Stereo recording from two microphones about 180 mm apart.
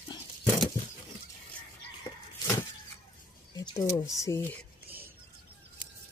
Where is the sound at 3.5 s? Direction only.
20° left (ahead or behind).